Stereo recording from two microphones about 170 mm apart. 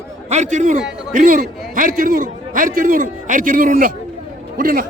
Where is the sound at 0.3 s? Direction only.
45° right (ahead or behind).